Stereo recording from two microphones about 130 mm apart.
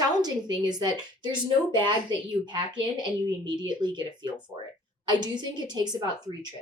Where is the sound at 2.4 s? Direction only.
35° right (ahead or behind).